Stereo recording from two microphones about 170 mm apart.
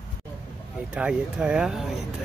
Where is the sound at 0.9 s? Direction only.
5° right (ahead or behind).